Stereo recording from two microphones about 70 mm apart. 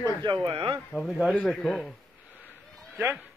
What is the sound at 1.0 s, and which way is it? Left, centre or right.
Speech, centre.